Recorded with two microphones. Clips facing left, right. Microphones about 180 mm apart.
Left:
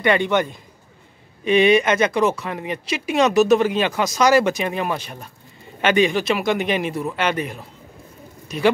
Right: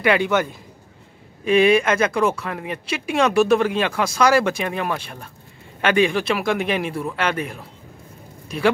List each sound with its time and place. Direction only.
0.0 s speech: 5° right (ahead or behind)